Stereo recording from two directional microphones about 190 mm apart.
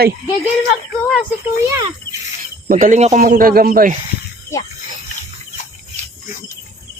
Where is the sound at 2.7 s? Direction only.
45° right (ahead or behind).